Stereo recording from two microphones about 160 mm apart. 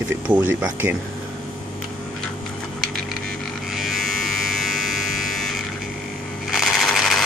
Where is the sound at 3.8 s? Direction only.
Centre (ahead or behind).